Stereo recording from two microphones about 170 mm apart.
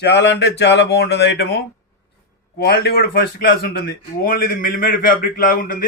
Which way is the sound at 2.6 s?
65° left (ahead or behind).